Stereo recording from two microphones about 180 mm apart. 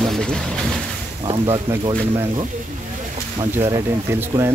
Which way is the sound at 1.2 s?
30° right (ahead or behind).